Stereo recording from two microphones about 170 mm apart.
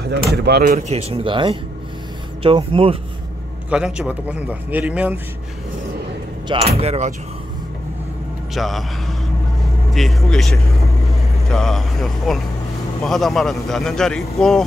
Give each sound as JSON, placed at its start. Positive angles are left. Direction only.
{"t": 0.3, "sound": "speech", "side_deg": -70}
{"t": 0.7, "sound": "speech", "side_deg": -40}
{"t": 3.7, "sound": "a man's voice", "side_deg": -5}
{"t": 6.4, "sound": "speech", "side_deg": -35}
{"t": 8.5, "sound": "speech", "side_deg": 0}